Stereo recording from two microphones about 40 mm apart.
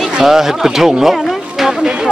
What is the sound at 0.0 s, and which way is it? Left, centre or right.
Speech, centre.